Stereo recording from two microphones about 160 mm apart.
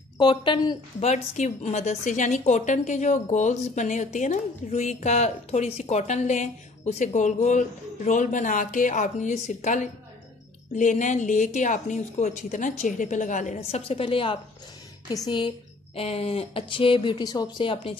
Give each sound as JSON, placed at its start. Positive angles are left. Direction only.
{"t": 0.2, "sound": "a woman's voice", "side_deg": 30}
{"t": 1.1, "sound": "a woman's voice", "side_deg": 45}